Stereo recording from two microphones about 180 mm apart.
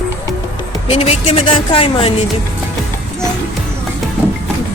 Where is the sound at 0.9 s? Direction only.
35° left (ahead or behind).